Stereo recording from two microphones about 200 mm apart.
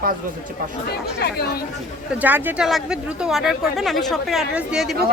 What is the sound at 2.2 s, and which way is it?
Speech, 10° right (ahead or behind).